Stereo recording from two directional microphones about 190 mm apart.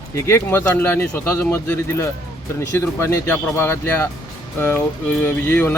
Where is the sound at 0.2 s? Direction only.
15° left (ahead or behind).